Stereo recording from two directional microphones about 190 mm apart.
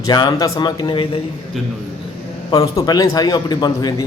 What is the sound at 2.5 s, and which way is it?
A man's voice, 20° left (ahead or behind).